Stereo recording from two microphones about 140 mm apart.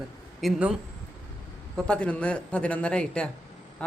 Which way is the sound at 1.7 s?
10° left (ahead or behind).